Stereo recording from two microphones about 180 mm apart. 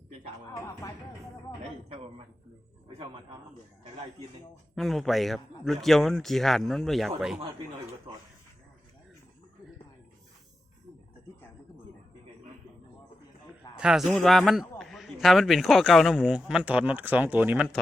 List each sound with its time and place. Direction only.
0.6 s speech: 15° left (ahead or behind)
4.7 s speech: centre (ahead or behind)
8.1 s speech: 30° right (ahead or behind)
13.7 s speech: 5° right (ahead or behind)